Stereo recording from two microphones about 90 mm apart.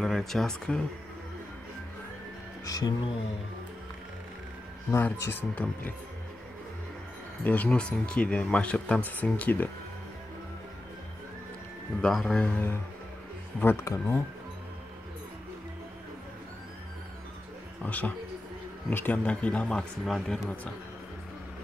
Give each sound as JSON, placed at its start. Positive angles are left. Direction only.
{"t": 0.0, "sound": "speech", "side_deg": 5}
{"t": 2.6, "sound": "music", "side_deg": 45}
{"t": 4.9, "sound": "speech", "side_deg": 25}
{"t": 7.4, "sound": "speech", "side_deg": 15}
{"t": 12.0, "sound": "speech", "side_deg": 5}
{"t": 12.4, "sound": "speech", "side_deg": 20}
{"t": 17.8, "sound": "speech", "side_deg": 15}